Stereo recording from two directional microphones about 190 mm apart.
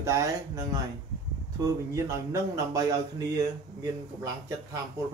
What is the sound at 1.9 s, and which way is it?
A man's voice, 15° right (ahead or behind).